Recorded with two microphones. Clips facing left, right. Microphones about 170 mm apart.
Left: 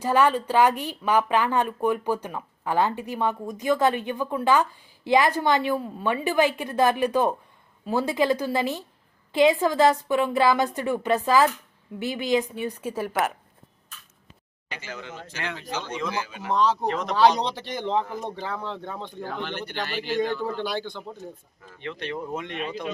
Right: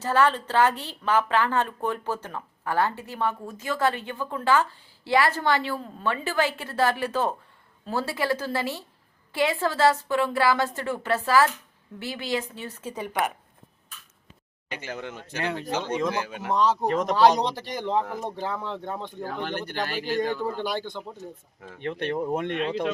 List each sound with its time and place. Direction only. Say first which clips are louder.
0.0 s a woman's voice: left 2 dB; 15° left (ahead or behind)
14.7 s speech: right 3 dB; 55° right (ahead or behind)
16.8 s speech: right 2 dB; 45° right (ahead or behind)
17.7 s speech: even; 5° right (ahead or behind)
19.2 s speech: even; 40° right (ahead or behind)
20.3 s speech: even; 10° right (ahead or behind)
21.6 s speech: right 4 dB; 55° right (ahead or behind)